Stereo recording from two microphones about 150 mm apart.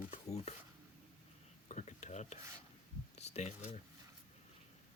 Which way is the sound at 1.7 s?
50° left (ahead or behind).